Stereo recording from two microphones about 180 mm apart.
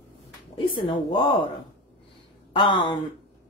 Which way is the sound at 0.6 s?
30° left (ahead or behind).